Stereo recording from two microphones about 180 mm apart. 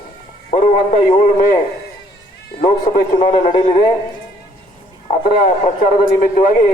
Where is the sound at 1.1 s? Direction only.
45° left (ahead or behind).